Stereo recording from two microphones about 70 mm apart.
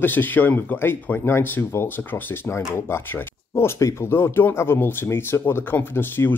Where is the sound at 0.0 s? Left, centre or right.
Left.